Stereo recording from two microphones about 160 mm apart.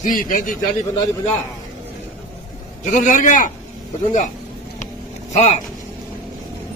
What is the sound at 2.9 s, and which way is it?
Speech, 50° left (ahead or behind).